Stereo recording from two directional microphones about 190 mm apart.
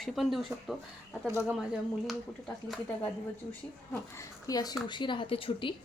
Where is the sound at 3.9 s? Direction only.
15° left (ahead or behind).